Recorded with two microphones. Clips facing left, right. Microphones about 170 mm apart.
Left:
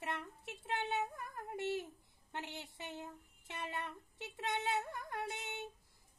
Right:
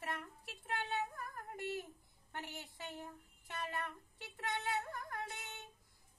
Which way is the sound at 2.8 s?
20° left (ahead or behind).